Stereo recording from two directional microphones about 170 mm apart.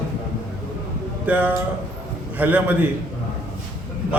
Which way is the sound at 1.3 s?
10° right (ahead or behind).